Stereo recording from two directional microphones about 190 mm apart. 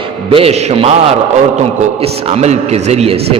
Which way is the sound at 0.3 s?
30° right (ahead or behind).